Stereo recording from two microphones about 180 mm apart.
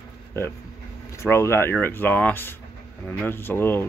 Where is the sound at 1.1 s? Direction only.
15° left (ahead or behind).